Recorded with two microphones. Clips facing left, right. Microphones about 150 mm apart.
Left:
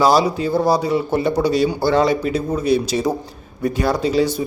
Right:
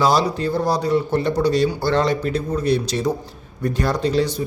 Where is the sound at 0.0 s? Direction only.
5° left (ahead or behind).